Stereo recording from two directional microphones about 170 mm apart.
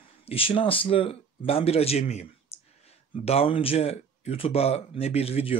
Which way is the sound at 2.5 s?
35° left (ahead or behind).